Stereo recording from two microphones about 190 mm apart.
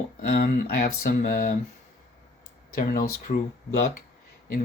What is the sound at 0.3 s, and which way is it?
Speech, 55° left (ahead or behind).